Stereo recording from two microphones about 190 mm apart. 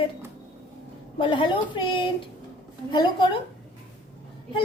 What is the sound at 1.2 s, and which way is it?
Speech, 25° left (ahead or behind).